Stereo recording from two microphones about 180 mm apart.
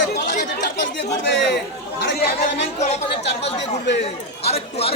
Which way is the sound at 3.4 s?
75° left (ahead or behind).